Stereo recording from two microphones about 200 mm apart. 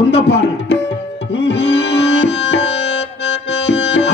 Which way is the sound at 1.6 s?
65° left (ahead or behind).